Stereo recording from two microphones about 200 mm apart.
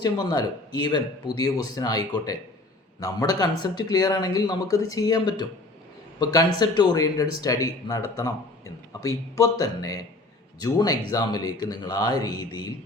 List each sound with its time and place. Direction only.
0.0 s speech: 20° left (ahead or behind)